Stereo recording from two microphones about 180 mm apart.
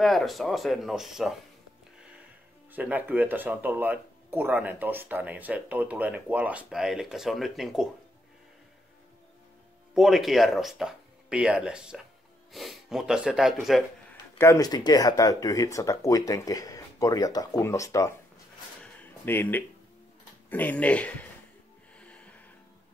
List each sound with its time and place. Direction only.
0.0 s speech: centre (ahead or behind)
2.7 s speech: 10° right (ahead or behind)
9.9 s speech: centre (ahead or behind)
14.4 s speech: 20° left (ahead or behind)
18.8 s a sound: 10° left (ahead or behind)
20.4 s speech: 10° left (ahead or behind)
21.9 s music: 5° left (ahead or behind)